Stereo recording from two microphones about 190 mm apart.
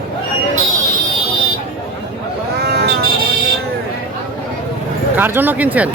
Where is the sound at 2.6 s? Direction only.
60° right (ahead or behind).